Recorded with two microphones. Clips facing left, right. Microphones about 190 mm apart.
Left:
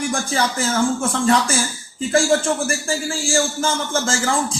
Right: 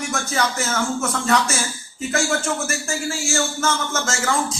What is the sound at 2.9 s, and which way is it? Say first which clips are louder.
A man's voice: left 2 dB; 30° left (ahead or behind).